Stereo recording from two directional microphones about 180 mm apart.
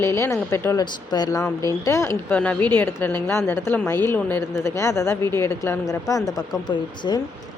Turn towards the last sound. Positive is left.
turn(degrees=25)  # may be behind; listen again after turning